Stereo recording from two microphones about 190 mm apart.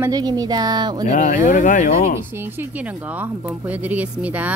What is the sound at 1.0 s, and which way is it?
Speech, 40° left (ahead or behind).